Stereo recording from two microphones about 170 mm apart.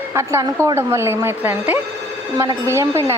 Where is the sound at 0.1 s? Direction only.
15° right (ahead or behind).